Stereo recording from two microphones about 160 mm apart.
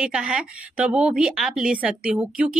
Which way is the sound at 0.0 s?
5° right (ahead or behind).